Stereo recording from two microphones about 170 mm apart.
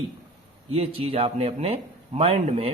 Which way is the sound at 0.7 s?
35° right (ahead or behind).